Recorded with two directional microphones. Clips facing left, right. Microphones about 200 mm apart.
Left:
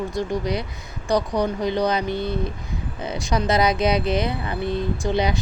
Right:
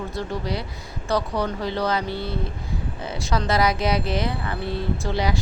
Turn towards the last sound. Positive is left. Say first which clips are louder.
# left 3 dB
turn(degrees=20)  # may be behind; listen again after turning